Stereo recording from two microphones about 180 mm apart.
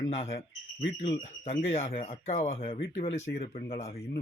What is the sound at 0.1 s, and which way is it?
Speech, 35° left (ahead or behind).